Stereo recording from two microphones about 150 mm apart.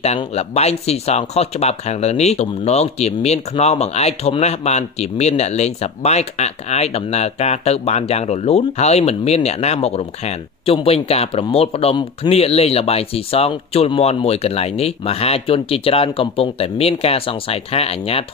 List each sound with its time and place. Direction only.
0.0 s speech: 45° left (ahead or behind)